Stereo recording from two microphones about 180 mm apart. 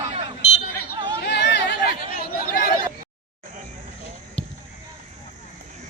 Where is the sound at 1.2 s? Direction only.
70° left (ahead or behind).